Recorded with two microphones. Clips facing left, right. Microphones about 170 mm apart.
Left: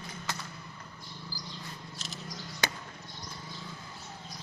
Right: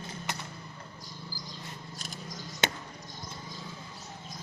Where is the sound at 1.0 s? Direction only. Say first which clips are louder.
Left 1 dB; 40° right (ahead or behind).